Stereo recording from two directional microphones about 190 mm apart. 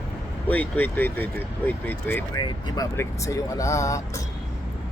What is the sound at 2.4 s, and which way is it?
Speech, 20° left (ahead or behind).